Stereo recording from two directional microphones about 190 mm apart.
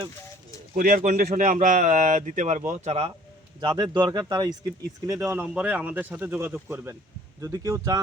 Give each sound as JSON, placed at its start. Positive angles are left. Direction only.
{"t": 0.7, "sound": "speech", "side_deg": -40}
{"t": 3.6, "sound": "speech", "side_deg": -25}